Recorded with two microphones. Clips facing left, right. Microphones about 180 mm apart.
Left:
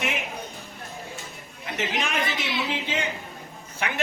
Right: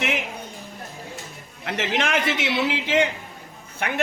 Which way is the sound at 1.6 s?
80° right.